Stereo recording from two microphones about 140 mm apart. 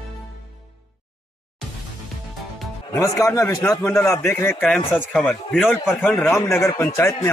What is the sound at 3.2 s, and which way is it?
A man's voice, 25° left (ahead or behind).